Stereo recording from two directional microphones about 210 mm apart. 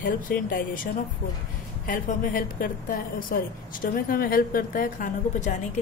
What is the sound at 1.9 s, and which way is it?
A woman's voice, 40° left (ahead or behind).